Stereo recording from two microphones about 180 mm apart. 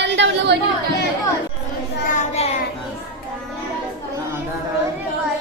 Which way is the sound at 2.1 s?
40° left (ahead or behind).